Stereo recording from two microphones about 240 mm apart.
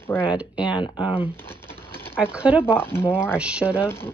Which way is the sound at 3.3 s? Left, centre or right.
Centre.